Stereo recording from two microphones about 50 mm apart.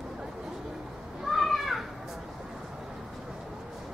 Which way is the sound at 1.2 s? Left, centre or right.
Centre.